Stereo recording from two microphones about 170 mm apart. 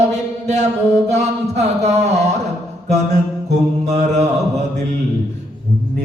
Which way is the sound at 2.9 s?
45° right (ahead or behind).